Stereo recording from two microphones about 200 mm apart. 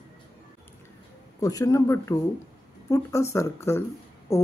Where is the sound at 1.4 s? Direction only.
15° left (ahead or behind).